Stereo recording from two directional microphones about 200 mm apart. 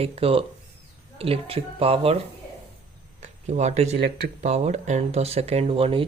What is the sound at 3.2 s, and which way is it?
Speech, 35° right (ahead or behind).